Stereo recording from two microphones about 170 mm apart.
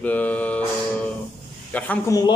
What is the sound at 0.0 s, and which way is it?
Mantra, 10° left (ahead or behind).